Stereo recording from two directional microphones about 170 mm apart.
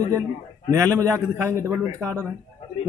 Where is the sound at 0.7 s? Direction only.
15° right (ahead or behind).